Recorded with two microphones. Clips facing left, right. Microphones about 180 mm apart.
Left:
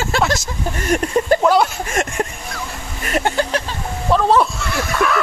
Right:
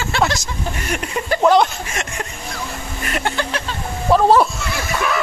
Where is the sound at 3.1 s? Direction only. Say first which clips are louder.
Left 4 dB; 40° left (ahead or behind).